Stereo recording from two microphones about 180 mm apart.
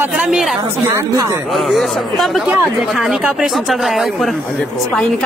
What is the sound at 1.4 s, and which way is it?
Speech, centre (ahead or behind).